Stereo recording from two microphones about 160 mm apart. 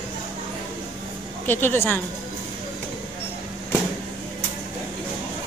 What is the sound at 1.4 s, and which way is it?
Speech, 15° left (ahead or behind).